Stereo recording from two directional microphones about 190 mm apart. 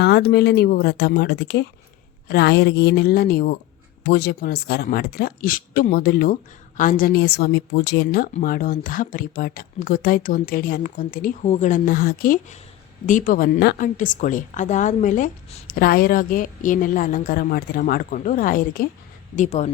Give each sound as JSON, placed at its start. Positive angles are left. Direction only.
{"t": 0.0, "sound": "a woman's voice", "side_deg": 60}
{"t": 19.4, "sound": "speech", "side_deg": 35}